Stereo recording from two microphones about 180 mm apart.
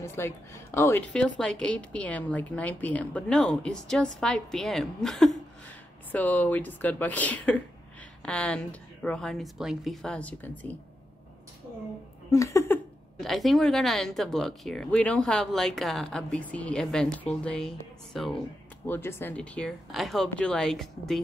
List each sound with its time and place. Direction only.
0.0 s a woman's voice: 15° left (ahead or behind)
12.3 s a sound: 15° left (ahead or behind)
13.2 s speech: centre (ahead or behind)